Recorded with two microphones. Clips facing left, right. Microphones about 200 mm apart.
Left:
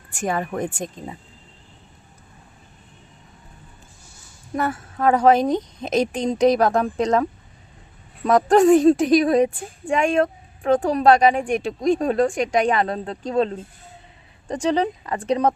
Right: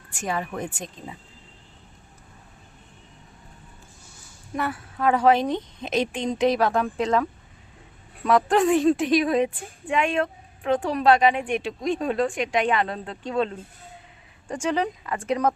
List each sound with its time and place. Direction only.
0.1 s speech: 50° left (ahead or behind)
4.5 s a woman's voice: 45° left (ahead or behind)